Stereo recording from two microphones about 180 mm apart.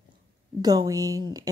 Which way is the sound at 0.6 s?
20° right (ahead or behind).